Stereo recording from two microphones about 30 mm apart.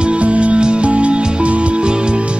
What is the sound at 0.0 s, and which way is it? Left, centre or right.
Music, right.